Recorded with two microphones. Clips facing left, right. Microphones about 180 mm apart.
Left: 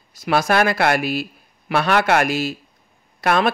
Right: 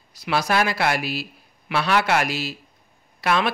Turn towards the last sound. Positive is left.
turn(degrees=50)  # may be behind; listen again after turning